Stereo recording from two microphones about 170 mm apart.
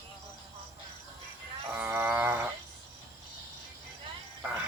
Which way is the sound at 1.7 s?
10° right (ahead or behind).